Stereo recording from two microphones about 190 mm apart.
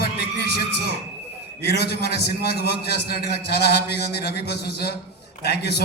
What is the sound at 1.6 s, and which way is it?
A man's voice, 55° left (ahead or behind).